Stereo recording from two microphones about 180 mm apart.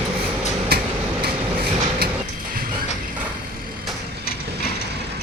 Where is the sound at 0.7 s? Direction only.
55° right (ahead or behind).